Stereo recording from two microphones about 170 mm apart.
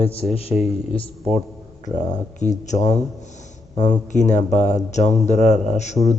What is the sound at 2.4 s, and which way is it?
Speech, 45° left (ahead or behind).